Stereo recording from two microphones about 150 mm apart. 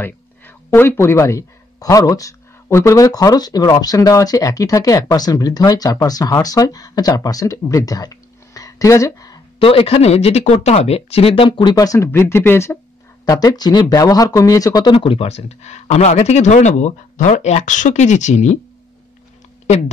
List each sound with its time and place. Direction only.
0.0 s speech: 15° left (ahead or behind)
9.6 s speech: 40° left (ahead or behind)